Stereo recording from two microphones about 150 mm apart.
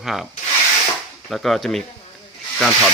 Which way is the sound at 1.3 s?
Centre (ahead or behind).